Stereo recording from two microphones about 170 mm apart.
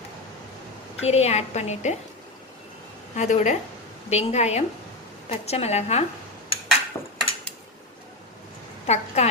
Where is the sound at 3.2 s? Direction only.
45° left (ahead or behind).